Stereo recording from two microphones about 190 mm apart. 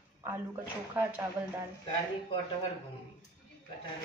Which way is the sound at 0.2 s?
10° right (ahead or behind).